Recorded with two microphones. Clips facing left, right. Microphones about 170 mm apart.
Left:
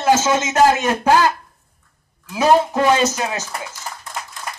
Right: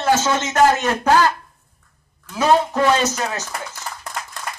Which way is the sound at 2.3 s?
15° left (ahead or behind).